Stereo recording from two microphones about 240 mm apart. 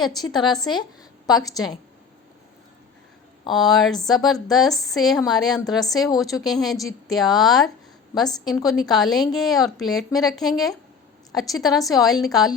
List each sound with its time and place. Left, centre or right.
0.2 s a woman's voice: centre
3.5 s speech: centre